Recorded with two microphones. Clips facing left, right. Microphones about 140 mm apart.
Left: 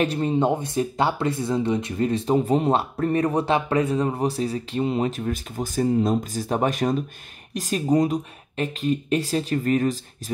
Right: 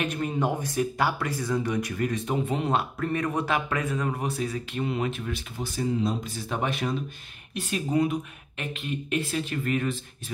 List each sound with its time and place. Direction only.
0.0 s speech: 30° left (ahead or behind)